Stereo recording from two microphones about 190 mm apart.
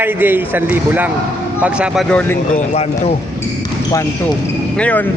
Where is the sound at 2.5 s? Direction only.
35° left (ahead or behind).